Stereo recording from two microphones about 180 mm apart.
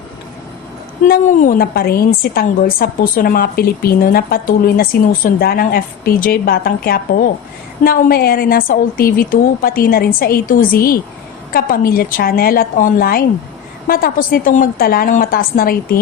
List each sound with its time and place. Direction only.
1.0 s a woman's voice: 50° left (ahead or behind)